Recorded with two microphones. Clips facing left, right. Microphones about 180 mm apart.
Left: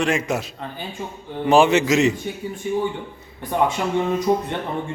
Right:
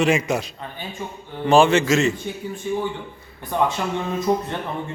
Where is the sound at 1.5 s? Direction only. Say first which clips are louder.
Even; 15° left (ahead or behind).